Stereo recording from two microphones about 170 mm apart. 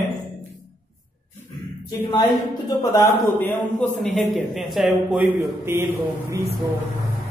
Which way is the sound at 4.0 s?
Centre (ahead or behind).